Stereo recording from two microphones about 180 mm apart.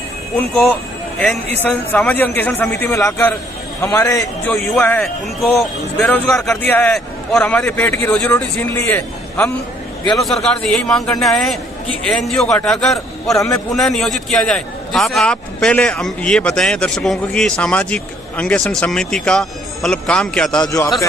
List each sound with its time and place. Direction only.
0.4 s a man's voice: 5° left (ahead or behind)
13.3 s a man's voice: 15° left (ahead or behind)
13.7 s a man's voice: centre (ahead or behind)
20.6 s a man's voice: 15° left (ahead or behind)